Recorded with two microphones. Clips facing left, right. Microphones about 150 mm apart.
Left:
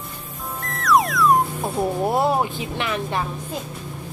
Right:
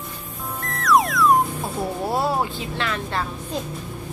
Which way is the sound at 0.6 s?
Centre (ahead or behind).